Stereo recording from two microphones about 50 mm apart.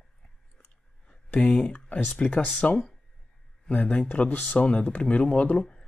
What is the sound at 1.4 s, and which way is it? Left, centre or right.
Speech, left.